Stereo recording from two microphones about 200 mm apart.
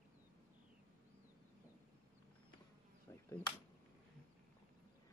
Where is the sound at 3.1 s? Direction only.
15° left (ahead or behind).